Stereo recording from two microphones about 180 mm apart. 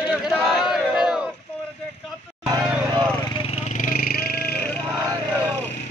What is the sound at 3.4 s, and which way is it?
Vehicle, 35° left (ahead or behind).